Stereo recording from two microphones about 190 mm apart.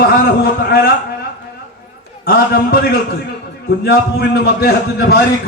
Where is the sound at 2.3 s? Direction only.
55° left (ahead or behind).